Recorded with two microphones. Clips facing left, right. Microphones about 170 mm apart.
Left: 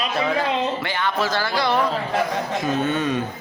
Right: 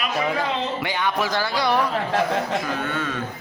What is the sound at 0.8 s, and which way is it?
Music, 15° right (ahead or behind).